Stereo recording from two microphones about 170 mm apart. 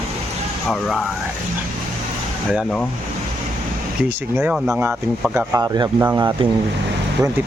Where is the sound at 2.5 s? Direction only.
5° left (ahead or behind).